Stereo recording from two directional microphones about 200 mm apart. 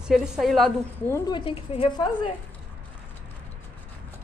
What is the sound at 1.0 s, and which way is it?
A woman's voice, 15° left (ahead or behind).